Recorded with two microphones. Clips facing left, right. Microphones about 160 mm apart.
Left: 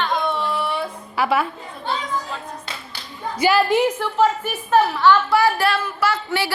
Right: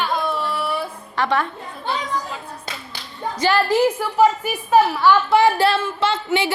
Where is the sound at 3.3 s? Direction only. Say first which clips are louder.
Left 2 dB; 10° left (ahead or behind).